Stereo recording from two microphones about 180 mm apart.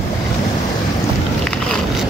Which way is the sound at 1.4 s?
5° left (ahead or behind).